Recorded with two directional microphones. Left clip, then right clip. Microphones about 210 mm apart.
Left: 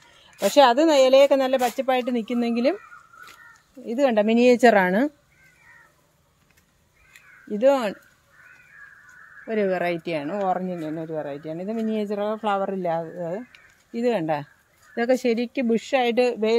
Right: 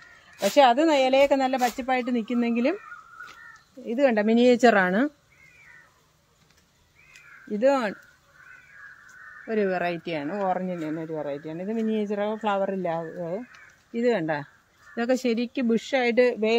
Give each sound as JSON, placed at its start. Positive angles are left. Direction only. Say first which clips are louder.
{"t": 0.4, "sound": "speech", "louder": "left 2 dB", "side_deg": 45}
{"t": 3.8, "sound": "speech", "louder": "left 2 dB", "side_deg": 25}
{"t": 7.5, "sound": "speech", "louder": "left 3 dB", "side_deg": 30}
{"t": 9.5, "sound": "speech", "louder": "left 2 dB", "side_deg": 25}